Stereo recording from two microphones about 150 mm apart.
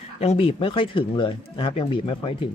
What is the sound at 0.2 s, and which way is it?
Speech, 40° left (ahead or behind).